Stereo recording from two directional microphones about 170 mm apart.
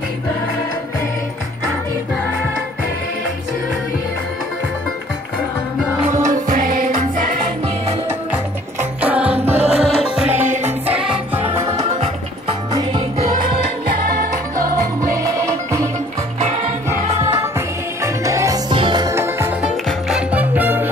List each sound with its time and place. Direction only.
6.0 s music: 45° right (ahead or behind)
9.0 s music: 5° right (ahead or behind)
15.2 s music: 20° right (ahead or behind)
17.2 s music: 15° right (ahead or behind)